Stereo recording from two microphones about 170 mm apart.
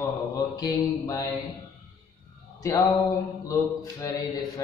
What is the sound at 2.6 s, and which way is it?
Speech, 20° left (ahead or behind).